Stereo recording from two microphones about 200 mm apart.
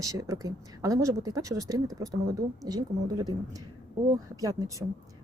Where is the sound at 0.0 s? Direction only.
15° right (ahead or behind).